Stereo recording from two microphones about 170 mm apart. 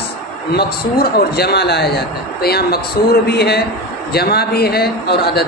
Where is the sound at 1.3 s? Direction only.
70° left (ahead or behind).